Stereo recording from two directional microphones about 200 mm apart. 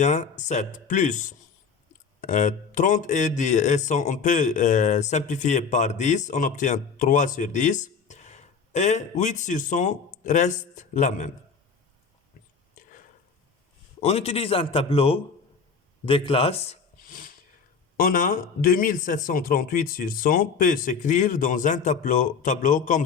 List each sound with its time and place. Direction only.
0.0 s speech: 35° left (ahead or behind)
14.0 s a man's voice: 30° left (ahead or behind)
17.1 s a sound: 45° left (ahead or behind)
17.9 s a man's voice: 45° left (ahead or behind)